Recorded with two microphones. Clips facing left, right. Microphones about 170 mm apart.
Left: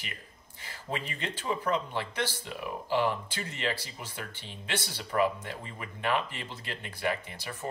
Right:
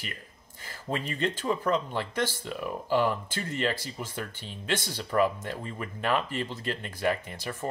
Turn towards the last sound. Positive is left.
turn(degrees=-45)  # may be behind; listen again after turning